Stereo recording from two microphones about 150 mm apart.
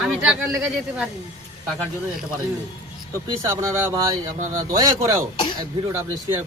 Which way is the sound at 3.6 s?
20° right (ahead or behind).